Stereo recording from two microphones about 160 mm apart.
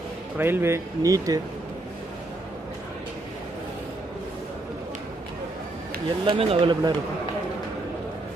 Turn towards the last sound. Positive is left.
turn(degrees=-30)  # may be behind; listen again after turning